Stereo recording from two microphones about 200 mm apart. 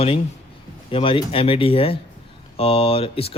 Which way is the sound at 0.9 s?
25° left (ahead or behind).